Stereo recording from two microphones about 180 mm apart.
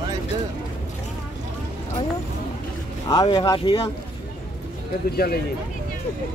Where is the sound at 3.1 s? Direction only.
25° left (ahead or behind).